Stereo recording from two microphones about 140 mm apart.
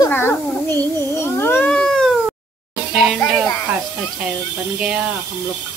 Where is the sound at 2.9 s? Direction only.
Centre (ahead or behind).